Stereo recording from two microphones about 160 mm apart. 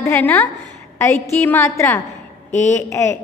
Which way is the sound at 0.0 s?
15° left (ahead or behind).